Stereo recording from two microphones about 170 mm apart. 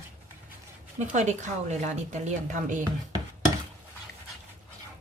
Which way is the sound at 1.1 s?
45° right (ahead or behind).